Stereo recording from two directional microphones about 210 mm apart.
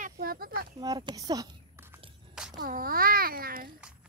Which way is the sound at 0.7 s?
20° right (ahead or behind).